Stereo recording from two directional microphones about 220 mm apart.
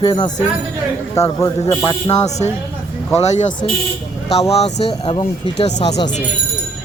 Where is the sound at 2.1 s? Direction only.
30° left (ahead or behind).